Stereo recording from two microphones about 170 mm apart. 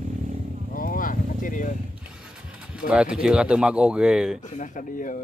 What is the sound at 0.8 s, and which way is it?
Vehicle, 55° left (ahead or behind).